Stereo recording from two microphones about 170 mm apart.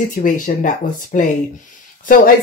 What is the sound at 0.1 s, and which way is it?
Speech, 50° left (ahead or behind).